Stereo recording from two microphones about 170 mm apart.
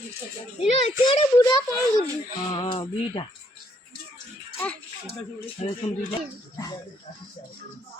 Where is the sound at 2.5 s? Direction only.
25° left (ahead or behind).